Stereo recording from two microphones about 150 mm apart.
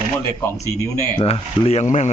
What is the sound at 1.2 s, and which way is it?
Speech, 40° left (ahead or behind).